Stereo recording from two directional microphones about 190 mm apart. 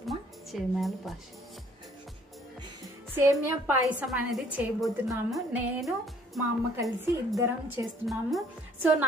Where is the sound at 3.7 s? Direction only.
5° right (ahead or behind).